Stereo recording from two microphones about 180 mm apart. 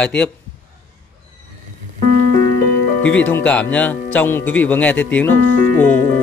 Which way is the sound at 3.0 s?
10° left (ahead or behind).